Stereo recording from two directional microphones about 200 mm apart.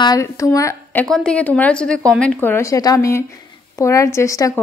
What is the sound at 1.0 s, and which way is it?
A woman's voice, 5° left (ahead or behind).